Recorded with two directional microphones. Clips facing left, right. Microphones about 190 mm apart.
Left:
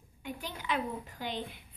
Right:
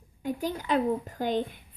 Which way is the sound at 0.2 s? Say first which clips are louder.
Right 10 dB; 40° right (ahead or behind).